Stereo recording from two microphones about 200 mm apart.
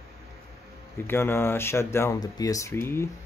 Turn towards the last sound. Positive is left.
turn(degrees=10)  # may be behind; listen again after turning